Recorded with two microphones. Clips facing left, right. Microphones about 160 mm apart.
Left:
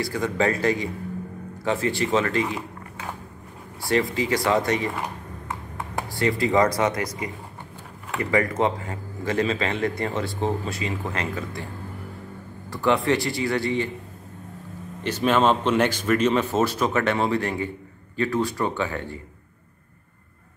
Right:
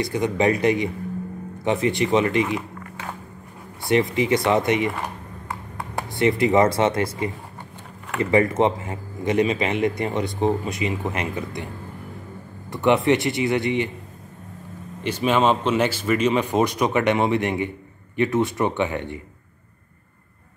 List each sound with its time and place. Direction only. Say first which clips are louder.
0.0 s speech: right 3 dB; 20° right (ahead or behind)
3.9 s speech: right 3 dB; 20° right (ahead or behind)
6.0 s speech: right 4 dB; 20° right (ahead or behind)
12.8 s speech: right 3 dB; 20° right (ahead or behind)
15.0 s speech: right 1 dB; 10° right (ahead or behind)